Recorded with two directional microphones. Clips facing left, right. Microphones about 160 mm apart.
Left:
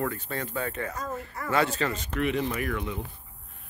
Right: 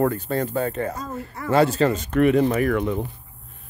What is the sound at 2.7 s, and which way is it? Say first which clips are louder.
Speech: right 10 dB; 60° right (ahead or behind).